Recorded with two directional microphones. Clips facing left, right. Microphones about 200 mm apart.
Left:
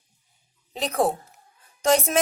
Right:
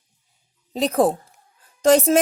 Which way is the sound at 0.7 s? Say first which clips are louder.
Right 5 dB; 35° right (ahead or behind).